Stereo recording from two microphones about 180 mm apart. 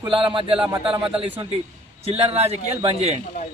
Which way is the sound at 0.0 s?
30° right (ahead or behind).